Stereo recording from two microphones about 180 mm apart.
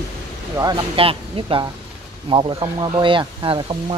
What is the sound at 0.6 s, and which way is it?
Speech, 25° right (ahead or behind).